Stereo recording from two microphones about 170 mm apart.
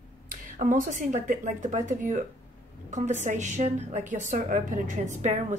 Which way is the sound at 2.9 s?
45° right (ahead or behind).